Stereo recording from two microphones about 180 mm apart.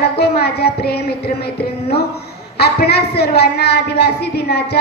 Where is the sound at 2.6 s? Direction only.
65° left (ahead or behind).